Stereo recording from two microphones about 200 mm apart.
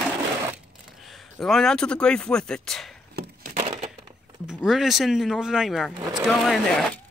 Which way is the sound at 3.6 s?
30° right (ahead or behind).